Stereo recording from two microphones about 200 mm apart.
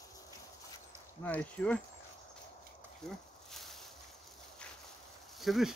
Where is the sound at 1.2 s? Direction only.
10° left (ahead or behind).